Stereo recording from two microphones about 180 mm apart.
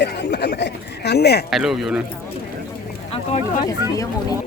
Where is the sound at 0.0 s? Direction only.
70° left (ahead or behind).